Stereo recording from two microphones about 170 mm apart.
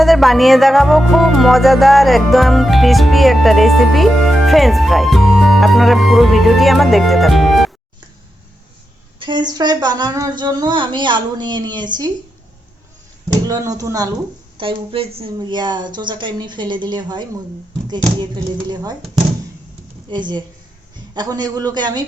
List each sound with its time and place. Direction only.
0.0 s music: centre (ahead or behind)
9.1 s speech: 30° right (ahead or behind)
13.5 s a woman's voice: 20° right (ahead or behind)
18.7 s speech: 25° right (ahead or behind)
20.1 s speech: 25° right (ahead or behind)